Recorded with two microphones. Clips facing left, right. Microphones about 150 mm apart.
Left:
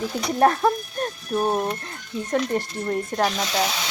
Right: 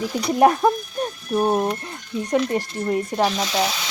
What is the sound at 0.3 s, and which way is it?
Speech, 15° right (ahead or behind).